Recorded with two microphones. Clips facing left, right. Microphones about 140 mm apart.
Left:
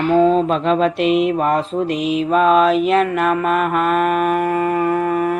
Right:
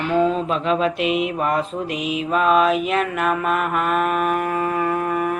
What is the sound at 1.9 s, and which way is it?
Mantra, 10° right (ahead or behind).